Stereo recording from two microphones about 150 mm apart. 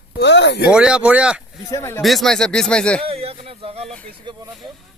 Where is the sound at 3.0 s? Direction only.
40° right (ahead or behind).